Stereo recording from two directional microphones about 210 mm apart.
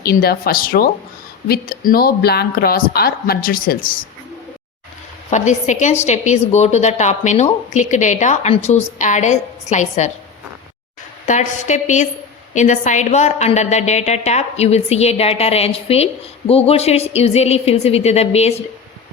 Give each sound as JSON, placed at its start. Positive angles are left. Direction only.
{"t": 0.0, "sound": "speech", "side_deg": 45}
{"t": 5.3, "sound": "speech", "side_deg": 35}
{"t": 11.3, "sound": "a woman's voice", "side_deg": 35}